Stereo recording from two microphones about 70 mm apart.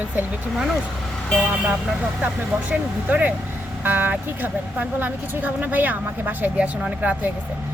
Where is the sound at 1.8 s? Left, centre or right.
Centre.